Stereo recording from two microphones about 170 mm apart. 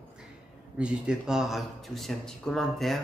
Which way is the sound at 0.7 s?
5° right (ahead or behind).